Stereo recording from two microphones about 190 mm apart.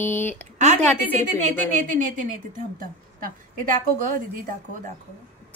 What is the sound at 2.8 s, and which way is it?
Speech, 45° right (ahead or behind).